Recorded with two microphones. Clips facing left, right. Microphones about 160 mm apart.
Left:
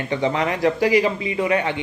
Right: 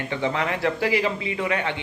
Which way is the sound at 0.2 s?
15° left (ahead or behind).